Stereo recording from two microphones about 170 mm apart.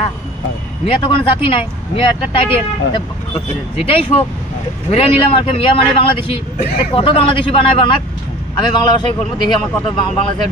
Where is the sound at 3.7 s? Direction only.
35° left (ahead or behind).